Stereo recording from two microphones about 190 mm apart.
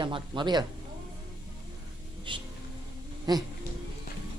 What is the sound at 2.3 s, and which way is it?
Speech, 25° right (ahead or behind).